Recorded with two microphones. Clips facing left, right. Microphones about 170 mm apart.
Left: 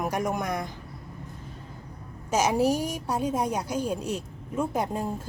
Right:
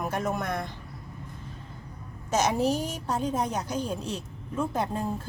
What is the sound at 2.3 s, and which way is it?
A woman's voice, 10° left (ahead or behind).